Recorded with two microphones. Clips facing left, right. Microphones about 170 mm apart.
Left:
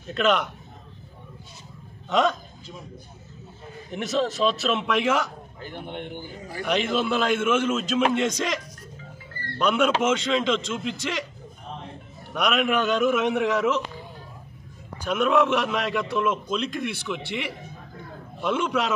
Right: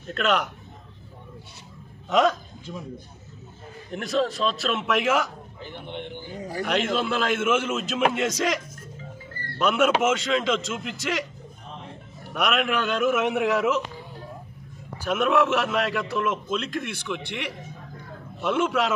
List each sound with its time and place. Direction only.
0.0 s a man's voice: centre (ahead or behind)
2.0 s a man's voice: centre (ahead or behind)
3.9 s a man's voice: centre (ahead or behind)
5.6 s a man's voice: 50° left (ahead or behind)
6.6 s a man's voice: centre (ahead or behind)
9.6 s a man's voice: 5° right (ahead or behind)
12.4 s a man's voice: centre (ahead or behind)
15.0 s a man's voice: centre (ahead or behind)